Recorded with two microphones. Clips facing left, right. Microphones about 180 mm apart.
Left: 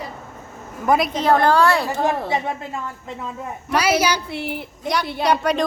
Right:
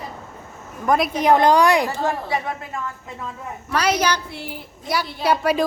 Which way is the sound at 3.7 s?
10° left (ahead or behind).